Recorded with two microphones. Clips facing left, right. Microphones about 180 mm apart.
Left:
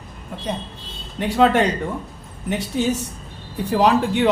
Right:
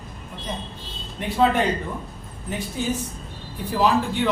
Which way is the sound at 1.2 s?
80° left.